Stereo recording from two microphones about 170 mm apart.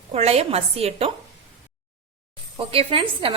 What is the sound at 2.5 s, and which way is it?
Speech, 35° right (ahead or behind).